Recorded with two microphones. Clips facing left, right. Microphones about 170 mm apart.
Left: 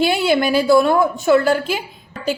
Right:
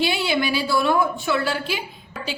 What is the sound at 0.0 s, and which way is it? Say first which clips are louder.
A woman's voice: left 6 dB; 45° left (ahead or behind).